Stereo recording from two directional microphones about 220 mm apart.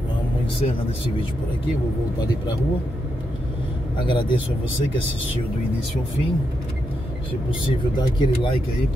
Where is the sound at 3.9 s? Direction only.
20° left (ahead or behind).